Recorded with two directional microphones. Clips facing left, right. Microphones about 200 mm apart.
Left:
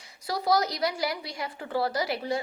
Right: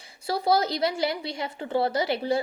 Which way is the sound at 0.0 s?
30° right (ahead or behind).